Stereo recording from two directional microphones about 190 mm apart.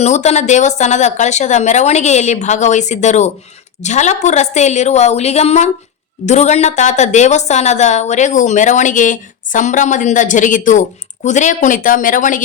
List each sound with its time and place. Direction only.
0.0 s a woman's voice: 35° left (ahead or behind)